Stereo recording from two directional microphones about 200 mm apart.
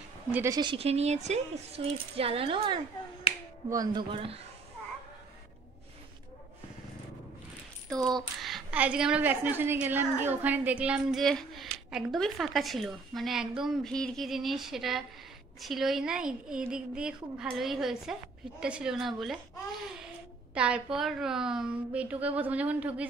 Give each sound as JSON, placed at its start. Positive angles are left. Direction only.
{"t": 0.3, "sound": "speech", "side_deg": -15}
{"t": 7.9, "sound": "a woman's voice", "side_deg": 5}
{"t": 20.5, "sound": "a woman's voice", "side_deg": -5}